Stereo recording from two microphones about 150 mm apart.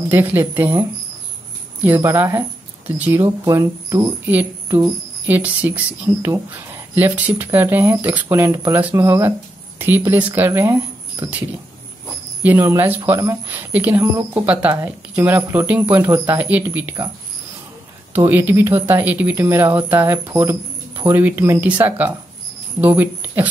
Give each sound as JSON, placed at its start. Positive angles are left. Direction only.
{"t": 0.1, "sound": "a woman's voice", "side_deg": -10}
{"t": 2.0, "sound": "a woman's voice", "side_deg": -20}
{"t": 12.4, "sound": "a woman's voice", "side_deg": -15}
{"t": 18.1, "sound": "a woman's voice", "side_deg": -10}